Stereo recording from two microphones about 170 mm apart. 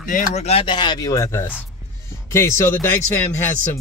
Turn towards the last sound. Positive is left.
turn(degrees=15)  # may be behind; listen again after turning